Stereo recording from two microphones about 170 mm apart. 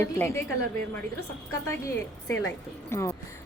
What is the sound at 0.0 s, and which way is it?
Speech, 15° left (ahead or behind).